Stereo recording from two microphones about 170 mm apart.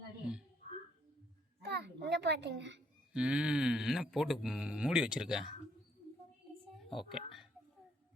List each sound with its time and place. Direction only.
1.6 s a child's voice: 85° right
3.1 s speech: 5° right (ahead or behind)
7.1 s speech: centre (ahead or behind)